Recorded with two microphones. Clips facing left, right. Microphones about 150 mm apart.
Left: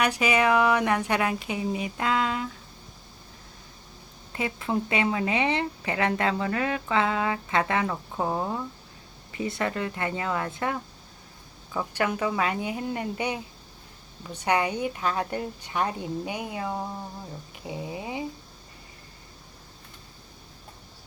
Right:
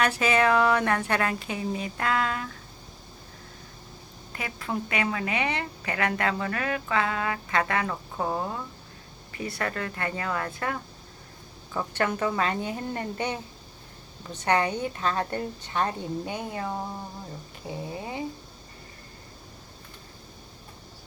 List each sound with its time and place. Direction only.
0.0 s speech: 15° left (ahead or behind)
4.3 s a woman's voice: 20° left (ahead or behind)
11.7 s speech: 10° left (ahead or behind)